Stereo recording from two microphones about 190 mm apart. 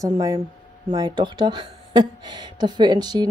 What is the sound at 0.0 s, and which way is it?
Speech, 20° right (ahead or behind).